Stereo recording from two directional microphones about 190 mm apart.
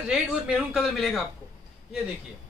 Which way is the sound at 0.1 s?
Centre (ahead or behind).